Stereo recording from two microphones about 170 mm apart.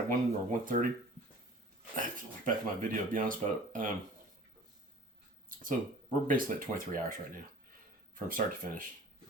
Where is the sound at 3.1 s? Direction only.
55° right (ahead or behind).